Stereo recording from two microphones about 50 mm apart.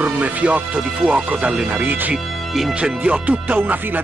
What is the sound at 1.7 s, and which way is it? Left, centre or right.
Speech, right.